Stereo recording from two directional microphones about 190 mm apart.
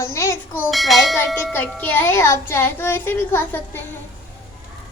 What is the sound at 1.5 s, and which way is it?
A child's voice, 10° left (ahead or behind).